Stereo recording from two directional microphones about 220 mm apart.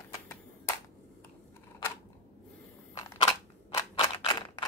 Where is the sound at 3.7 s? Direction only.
15° left (ahead or behind).